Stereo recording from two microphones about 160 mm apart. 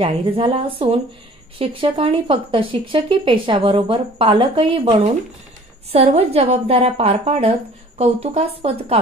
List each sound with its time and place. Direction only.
0.0 s speech: 35° right (ahead or behind)